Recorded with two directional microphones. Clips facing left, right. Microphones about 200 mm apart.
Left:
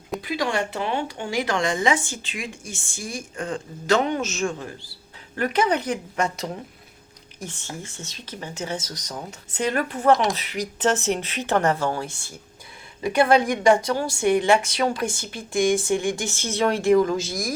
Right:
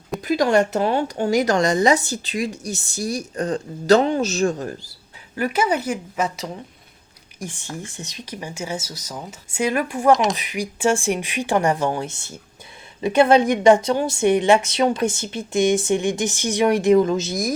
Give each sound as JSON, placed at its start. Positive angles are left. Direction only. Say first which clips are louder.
{"t": 0.2, "sound": "a woman's voice", "louder": "right 9 dB", "side_deg": -45}
{"t": 5.4, "sound": "speech", "louder": "right 1 dB", "side_deg": -5}
{"t": 7.3, "sound": "a woman's voice", "louder": "right 3 dB", "side_deg": -15}